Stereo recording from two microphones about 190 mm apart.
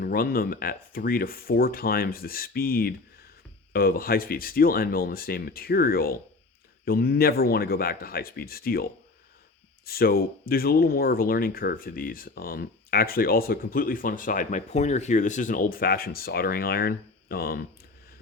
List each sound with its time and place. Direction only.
0.0 s speech: 50° left (ahead or behind)